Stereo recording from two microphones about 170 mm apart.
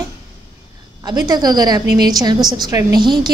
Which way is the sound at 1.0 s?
25° right (ahead or behind).